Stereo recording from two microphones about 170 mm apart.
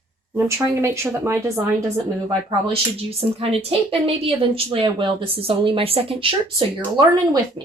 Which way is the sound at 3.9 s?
35° right (ahead or behind).